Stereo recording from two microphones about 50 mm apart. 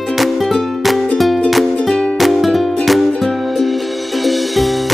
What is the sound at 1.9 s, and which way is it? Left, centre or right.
Music, centre.